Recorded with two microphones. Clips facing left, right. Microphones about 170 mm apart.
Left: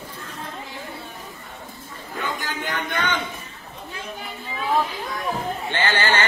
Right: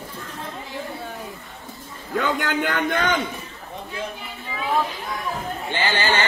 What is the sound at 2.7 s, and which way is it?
Speech, 50° right (ahead or behind).